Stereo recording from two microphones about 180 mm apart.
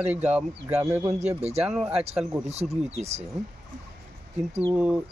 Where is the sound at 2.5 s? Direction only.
35° right (ahead or behind).